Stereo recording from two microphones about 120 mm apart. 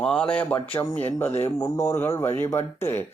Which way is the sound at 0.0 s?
10° left (ahead or behind).